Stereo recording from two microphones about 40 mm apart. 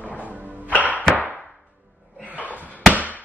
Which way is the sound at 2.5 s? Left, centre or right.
Left.